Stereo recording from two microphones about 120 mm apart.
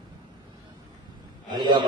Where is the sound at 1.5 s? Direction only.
35° right (ahead or behind).